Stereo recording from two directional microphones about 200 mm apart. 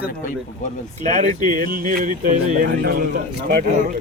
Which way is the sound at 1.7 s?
45° right (ahead or behind).